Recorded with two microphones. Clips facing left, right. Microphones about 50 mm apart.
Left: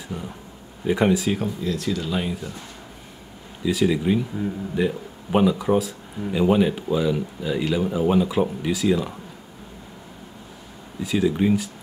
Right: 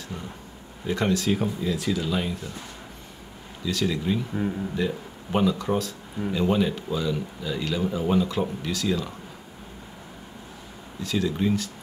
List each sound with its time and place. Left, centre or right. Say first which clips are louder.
0.1 s speech: left 6 dB; centre
1.4 s speech: left 1 dB; centre
2.1 s speech: left 2 dB; centre
3.6 s speech: left 5 dB; centre
11.0 s speech: left 5 dB; centre